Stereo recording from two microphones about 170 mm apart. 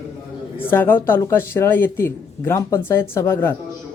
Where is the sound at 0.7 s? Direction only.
10° left (ahead or behind).